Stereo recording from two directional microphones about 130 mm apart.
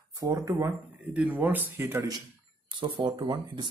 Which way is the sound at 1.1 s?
10° right (ahead or behind).